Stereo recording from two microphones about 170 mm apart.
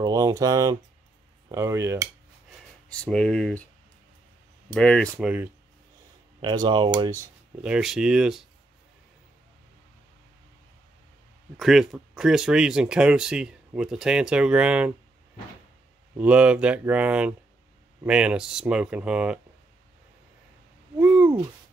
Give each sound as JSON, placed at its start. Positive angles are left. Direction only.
{"t": 0.0, "sound": "speech", "side_deg": -20}
{"t": 2.9, "sound": "speech", "side_deg": 5}
{"t": 4.7, "sound": "speech", "side_deg": 5}
{"t": 5.2, "sound": "speech", "side_deg": -10}
{"t": 6.4, "sound": "speech", "side_deg": -25}
{"t": 7.2, "sound": "speech", "side_deg": -5}
{"t": 11.5, "sound": "speech", "side_deg": 0}
{"t": 16.2, "sound": "speech", "side_deg": -5}
{"t": 21.0, "sound": "owl", "side_deg": -10}